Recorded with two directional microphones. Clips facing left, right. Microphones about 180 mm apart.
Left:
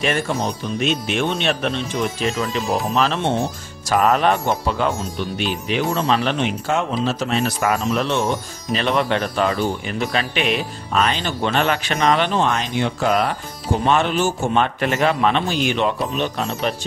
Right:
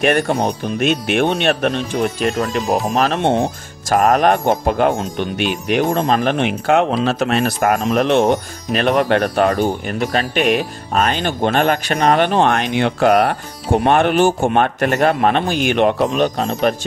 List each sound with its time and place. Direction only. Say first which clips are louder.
0.0 s speech: right 5 dB; 55° right (ahead or behind)
5.2 s speech: right 1 dB; 65° right (ahead or behind)
5.8 s speech: right 3 dB; 45° right (ahead or behind); by 16.2 s 70° right (ahead or behind)
16.2 s speech: right 6 dB; 40° right (ahead or behind)